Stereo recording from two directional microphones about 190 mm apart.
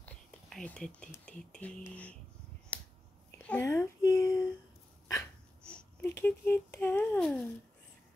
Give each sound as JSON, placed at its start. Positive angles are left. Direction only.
{"t": 0.0, "sound": "speech", "side_deg": 5}
{"t": 2.7, "sound": "finger snapping", "side_deg": 10}
{"t": 3.4, "sound": "a sound", "side_deg": 10}
{"t": 5.7, "sound": "speech", "side_deg": 5}